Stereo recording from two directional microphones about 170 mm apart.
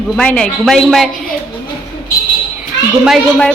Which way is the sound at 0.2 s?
5° left (ahead or behind).